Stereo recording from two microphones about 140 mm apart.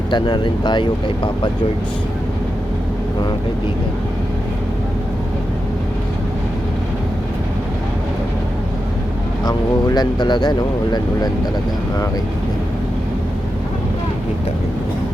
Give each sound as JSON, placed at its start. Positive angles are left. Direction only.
{"t": 0.1, "sound": "speech", "side_deg": 35}
{"t": 9.4, "sound": "speech", "side_deg": 30}